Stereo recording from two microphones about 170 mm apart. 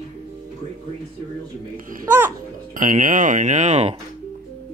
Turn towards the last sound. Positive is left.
turn(degrees=-45)  # may be behind; listen again after turning